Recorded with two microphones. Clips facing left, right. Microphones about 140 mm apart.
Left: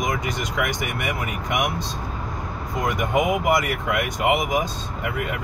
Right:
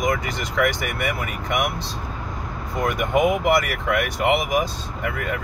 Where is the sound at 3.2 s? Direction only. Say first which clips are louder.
Right 2 dB; 20° left (ahead or behind).